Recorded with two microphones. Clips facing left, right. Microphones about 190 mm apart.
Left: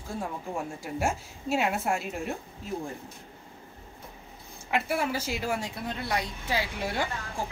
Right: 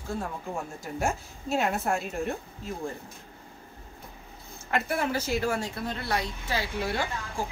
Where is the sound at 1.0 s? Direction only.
10° left (ahead or behind).